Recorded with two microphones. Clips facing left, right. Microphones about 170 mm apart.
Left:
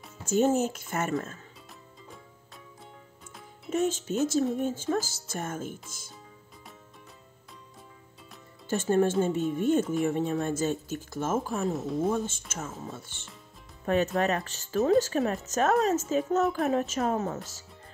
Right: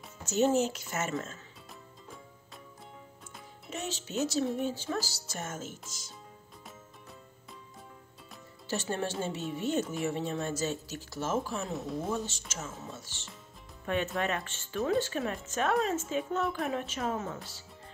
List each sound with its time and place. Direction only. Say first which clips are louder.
0.2 s speech: left 2 dB; 50° left (ahead or behind)
3.7 s speech: left 8 dB; 50° left (ahead or behind)
8.6 s speech: left 9 dB; 50° left (ahead or behind)
11.7 s speech: left 4 dB; centre (ahead or behind)
12.1 s speech: left 5 dB; 50° left (ahead or behind)
14.1 s speech: left 5 dB; 40° left (ahead or behind)